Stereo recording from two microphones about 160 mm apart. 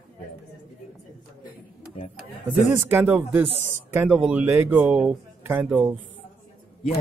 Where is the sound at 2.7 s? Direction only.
10° right (ahead or behind).